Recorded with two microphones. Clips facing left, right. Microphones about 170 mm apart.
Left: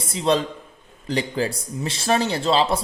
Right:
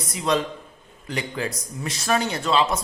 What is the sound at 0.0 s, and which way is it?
A man's voice, 30° left (ahead or behind).